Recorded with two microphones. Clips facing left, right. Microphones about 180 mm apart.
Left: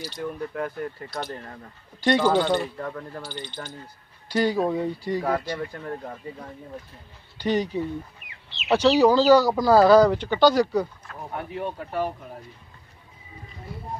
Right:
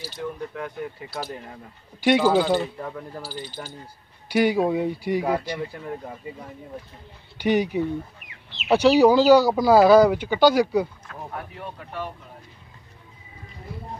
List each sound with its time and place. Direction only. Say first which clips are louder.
0.0 s speech: left 1 dB; centre (ahead or behind)
7.3 s speech: right 3 dB; 10° right (ahead or behind)
11.3 s speech: left 7 dB; 25° left (ahead or behind)